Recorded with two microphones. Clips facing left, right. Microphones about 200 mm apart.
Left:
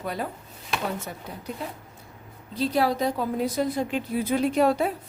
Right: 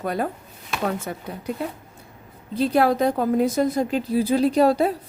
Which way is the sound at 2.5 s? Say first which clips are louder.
Right 5 dB; 55° right (ahead or behind).